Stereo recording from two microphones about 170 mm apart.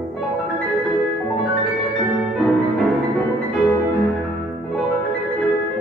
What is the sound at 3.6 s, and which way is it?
Music, centre (ahead or behind).